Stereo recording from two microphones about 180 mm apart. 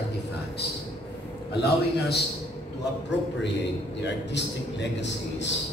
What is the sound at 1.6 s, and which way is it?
Speech, 65° left (ahead or behind).